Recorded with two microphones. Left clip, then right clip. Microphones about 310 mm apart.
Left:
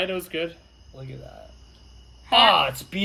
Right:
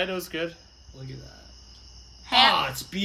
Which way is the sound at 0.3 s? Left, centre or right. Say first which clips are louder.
Left 2 dB; centre.